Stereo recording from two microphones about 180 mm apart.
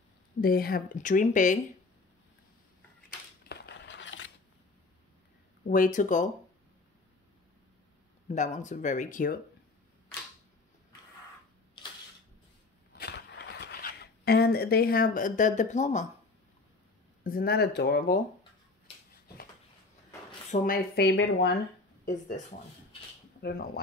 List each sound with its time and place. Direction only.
0.4 s speech: 55° left (ahead or behind)
3.4 s a sound: 75° left (ahead or behind)
5.7 s speech: 50° left (ahead or behind)
8.3 s speech: 40° left (ahead or behind)
12.9 s a sound: 70° left (ahead or behind); by 16.1 s 40° left (ahead or behind)
17.2 s speech: 55° left (ahead or behind)
20.5 s speech: 50° left (ahead or behind); by 21.5 s 70° left (ahead or behind)
22.0 s speech: 40° left (ahead or behind)
23.4 s speech: 60° left (ahead or behind)